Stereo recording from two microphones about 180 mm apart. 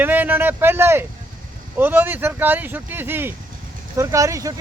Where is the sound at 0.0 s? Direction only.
10° right (ahead or behind).